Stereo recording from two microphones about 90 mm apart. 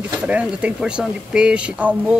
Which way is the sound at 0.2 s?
15° right (ahead or behind).